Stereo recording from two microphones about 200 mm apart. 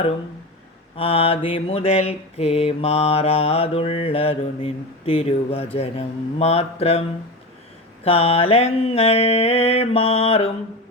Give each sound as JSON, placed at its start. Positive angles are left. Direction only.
{"t": 0.9, "sound": "mantra", "side_deg": 30}
{"t": 8.0, "sound": "mantra", "side_deg": 30}